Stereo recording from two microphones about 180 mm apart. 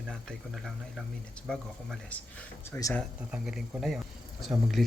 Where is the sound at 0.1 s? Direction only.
Centre (ahead or behind).